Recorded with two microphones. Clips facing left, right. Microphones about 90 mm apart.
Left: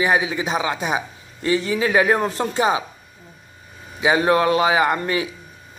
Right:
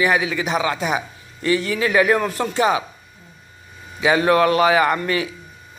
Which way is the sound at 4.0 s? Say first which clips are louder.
Right 1 dB; 25° left (ahead or behind).